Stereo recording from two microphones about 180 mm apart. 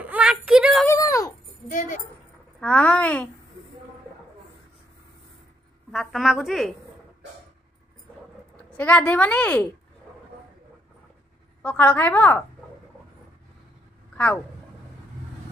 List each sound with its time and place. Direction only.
0.0 s a sound: 5° right (ahead or behind)
0.8 s speech: 20° left (ahead or behind)
1.7 s speech: 45° left (ahead or behind)
2.6 s a woman's voice: 5° left (ahead or behind)
5.9 s a woman's voice: centre (ahead or behind)
8.6 s a woman's voice: 10° left (ahead or behind)
11.6 s a woman's voice: 10° left (ahead or behind)
14.1 s speech: 5° left (ahead or behind)